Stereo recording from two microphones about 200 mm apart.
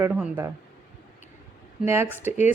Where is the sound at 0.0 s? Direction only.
10° right (ahead or behind).